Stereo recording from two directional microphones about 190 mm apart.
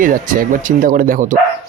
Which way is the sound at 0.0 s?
45° right (ahead or behind).